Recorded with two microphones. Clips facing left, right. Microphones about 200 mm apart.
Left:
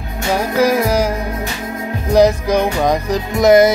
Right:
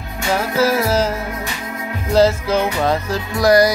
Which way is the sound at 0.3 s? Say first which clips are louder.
Left 2 dB; 15° left (ahead or behind).